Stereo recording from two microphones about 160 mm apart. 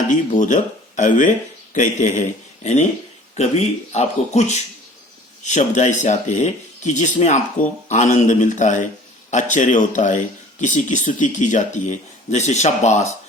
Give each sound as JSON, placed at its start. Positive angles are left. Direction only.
{"t": 0.1, "sound": "speech", "side_deg": 50}